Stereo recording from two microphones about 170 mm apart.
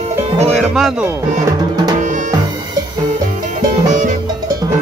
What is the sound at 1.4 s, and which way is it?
Music, 25° right (ahead or behind).